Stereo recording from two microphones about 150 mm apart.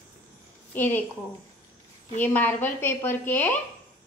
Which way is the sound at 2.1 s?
10° left (ahead or behind).